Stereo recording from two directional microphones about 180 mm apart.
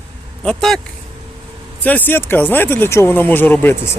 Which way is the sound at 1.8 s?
10° left (ahead or behind).